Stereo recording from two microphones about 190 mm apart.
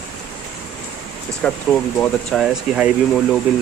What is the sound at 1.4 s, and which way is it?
Speech, 5° left (ahead or behind).